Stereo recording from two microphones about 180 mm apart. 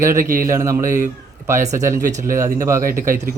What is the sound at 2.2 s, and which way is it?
Speech, 15° right (ahead or behind).